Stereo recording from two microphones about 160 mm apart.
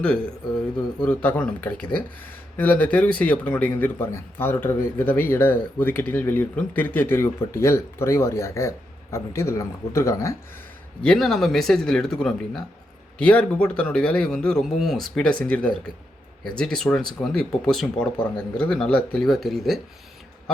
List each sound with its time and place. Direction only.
0.0 s speech: 5° left (ahead or behind)
11.0 s speech: 5° left (ahead or behind)